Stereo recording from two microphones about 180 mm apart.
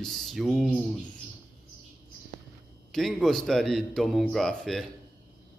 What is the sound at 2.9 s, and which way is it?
A man's voice, centre (ahead or behind).